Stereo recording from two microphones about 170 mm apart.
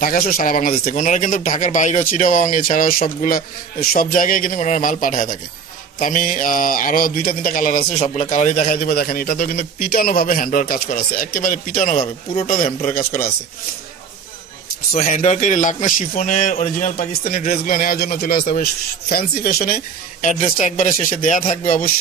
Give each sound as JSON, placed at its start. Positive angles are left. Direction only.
{"t": 0.0, "sound": "speech", "side_deg": 60}
{"t": 8.0, "sound": "speech", "side_deg": 45}
{"t": 8.8, "sound": "a man's voice", "side_deg": 60}
{"t": 12.4, "sound": "speech", "side_deg": 35}
{"t": 15.0, "sound": "speech", "side_deg": 45}